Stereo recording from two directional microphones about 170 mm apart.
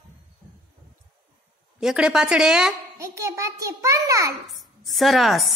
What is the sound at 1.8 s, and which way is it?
Speech, 5° right (ahead or behind).